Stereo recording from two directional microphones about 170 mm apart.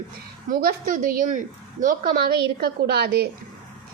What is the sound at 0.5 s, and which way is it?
A woman's voice, 60° right (ahead or behind).